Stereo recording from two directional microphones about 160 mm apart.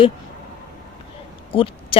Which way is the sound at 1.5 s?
35° left (ahead or behind).